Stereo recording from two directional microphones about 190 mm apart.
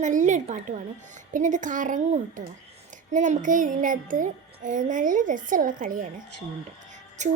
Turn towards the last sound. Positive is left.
turn(degrees=-40)  # may be behind; listen again after turning